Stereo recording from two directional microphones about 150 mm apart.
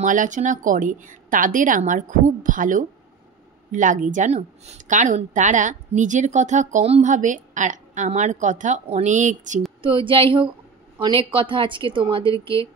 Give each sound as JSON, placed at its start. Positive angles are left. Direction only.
{"t": 0.0, "sound": "a woman's voice", "side_deg": -60}
{"t": 9.8, "sound": "a woman's voice", "side_deg": -35}